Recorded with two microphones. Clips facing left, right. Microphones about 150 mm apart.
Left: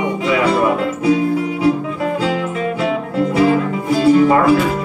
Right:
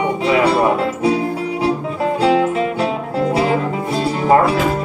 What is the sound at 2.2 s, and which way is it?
Music, 35° right (ahead or behind).